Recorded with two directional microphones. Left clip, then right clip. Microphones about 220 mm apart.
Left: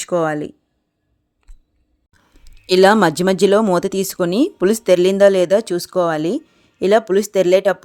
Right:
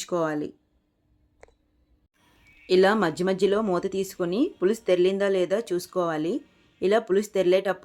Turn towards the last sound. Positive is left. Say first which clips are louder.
# left 9 dB
turn(degrees=40)  # may be behind; listen again after turning